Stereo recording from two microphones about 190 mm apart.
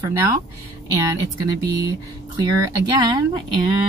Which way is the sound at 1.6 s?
20° right (ahead or behind).